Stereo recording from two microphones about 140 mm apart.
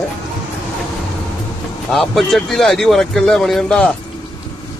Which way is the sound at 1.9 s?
Centre (ahead or behind).